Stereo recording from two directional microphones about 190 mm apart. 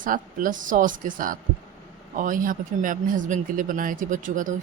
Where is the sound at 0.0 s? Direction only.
45° right (ahead or behind).